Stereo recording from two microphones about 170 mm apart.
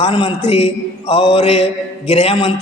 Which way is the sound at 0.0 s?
30° left (ahead or behind).